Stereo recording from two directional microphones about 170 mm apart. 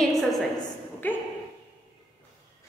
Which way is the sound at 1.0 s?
10° left (ahead or behind).